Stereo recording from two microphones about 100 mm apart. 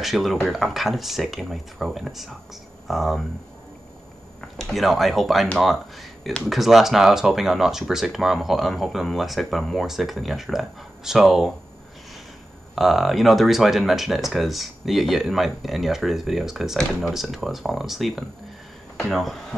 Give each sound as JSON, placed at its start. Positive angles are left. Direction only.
{"t": 0.0, "sound": "speech", "side_deg": 0}
{"t": 4.4, "sound": "speech", "side_deg": 5}
{"t": 12.7, "sound": "speech", "side_deg": 0}